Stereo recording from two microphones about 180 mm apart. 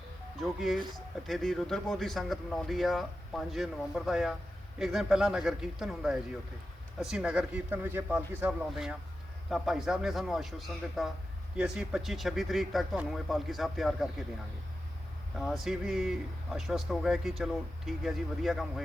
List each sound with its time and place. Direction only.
0.3 s speech: centre (ahead or behind)
15.4 s speech: centre (ahead or behind)